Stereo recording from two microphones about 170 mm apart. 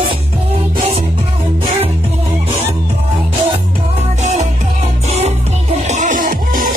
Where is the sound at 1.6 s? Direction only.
35° right (ahead or behind).